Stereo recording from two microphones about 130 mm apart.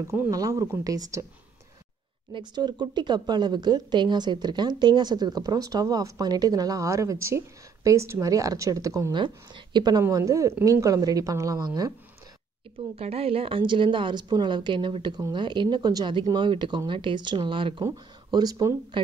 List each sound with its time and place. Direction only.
0.0 s a woman's voice: 20° right (ahead or behind)
2.3 s speech: 35° right (ahead or behind)
10.0 s a woman's voice: 25° right (ahead or behind)
12.9 s a woman's voice: 50° right (ahead or behind); by 18.8 s 25° right (ahead or behind)